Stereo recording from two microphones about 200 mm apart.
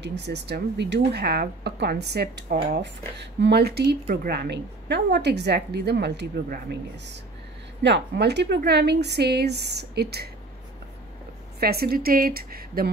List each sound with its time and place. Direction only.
0.0 s a woman's voice: 60° right (ahead or behind)
11.6 s speech: 50° right (ahead or behind)